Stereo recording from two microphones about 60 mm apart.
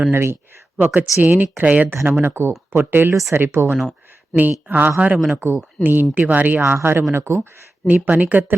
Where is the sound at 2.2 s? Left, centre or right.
Right.